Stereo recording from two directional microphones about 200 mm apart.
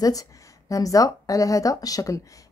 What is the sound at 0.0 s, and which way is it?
Speech, 15° left (ahead or behind).